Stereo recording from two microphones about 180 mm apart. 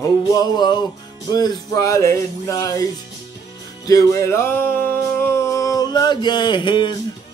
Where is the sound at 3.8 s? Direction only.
20° left (ahead or behind).